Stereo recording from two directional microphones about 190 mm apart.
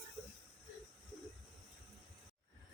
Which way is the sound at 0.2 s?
Centre (ahead or behind).